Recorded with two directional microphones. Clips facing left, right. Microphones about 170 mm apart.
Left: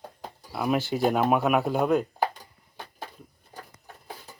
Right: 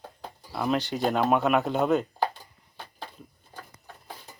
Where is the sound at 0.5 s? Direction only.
10° left (ahead or behind).